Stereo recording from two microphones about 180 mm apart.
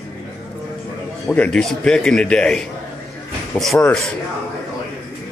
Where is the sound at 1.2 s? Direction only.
5° left (ahead or behind).